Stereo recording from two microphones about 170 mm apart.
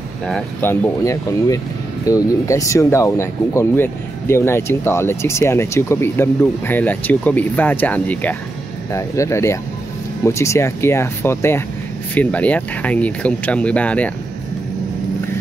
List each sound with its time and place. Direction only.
0.6 s speech: 15° left (ahead or behind)